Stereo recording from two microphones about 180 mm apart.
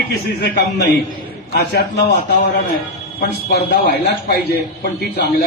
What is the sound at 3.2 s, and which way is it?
A man's voice, 60° left (ahead or behind).